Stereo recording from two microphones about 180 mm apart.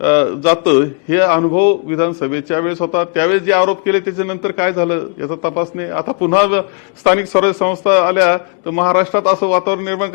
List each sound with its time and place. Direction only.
0.1 s a man's voice: 15° left (ahead or behind)